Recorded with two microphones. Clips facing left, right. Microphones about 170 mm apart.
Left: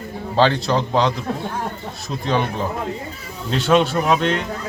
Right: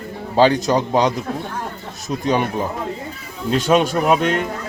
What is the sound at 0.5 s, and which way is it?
Speech, 45° right (ahead or behind).